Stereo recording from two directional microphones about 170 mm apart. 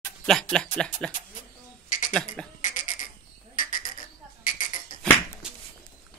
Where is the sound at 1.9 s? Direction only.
50° left (ahead or behind).